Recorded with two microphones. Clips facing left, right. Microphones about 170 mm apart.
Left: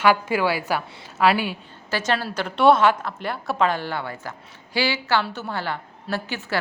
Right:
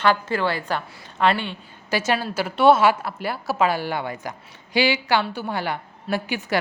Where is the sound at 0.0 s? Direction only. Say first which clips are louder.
Left 1 dB; 10° left (ahead or behind).